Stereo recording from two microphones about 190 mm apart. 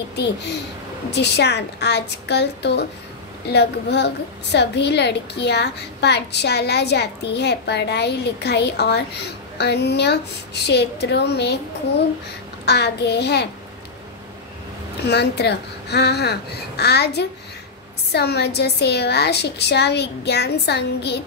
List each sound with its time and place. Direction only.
0.1 s a woman's voice: 60° left (ahead or behind)
12.6 s a woman's voice: 60° left (ahead or behind)
15.0 s a woman's voice: 60° left (ahead or behind)